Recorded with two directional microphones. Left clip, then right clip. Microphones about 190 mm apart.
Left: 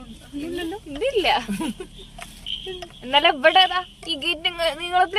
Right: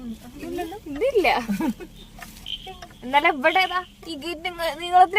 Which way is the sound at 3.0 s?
10° right (ahead or behind).